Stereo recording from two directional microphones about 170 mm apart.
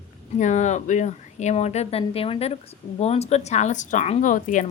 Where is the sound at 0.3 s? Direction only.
45° left (ahead or behind).